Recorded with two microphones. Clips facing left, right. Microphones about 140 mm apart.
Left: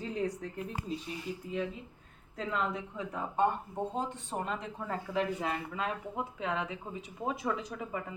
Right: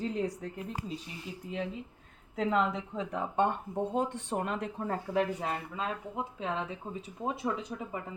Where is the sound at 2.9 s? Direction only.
90° right.